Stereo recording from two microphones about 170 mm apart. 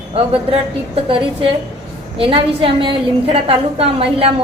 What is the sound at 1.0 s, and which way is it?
A woman's voice, 30° right (ahead or behind).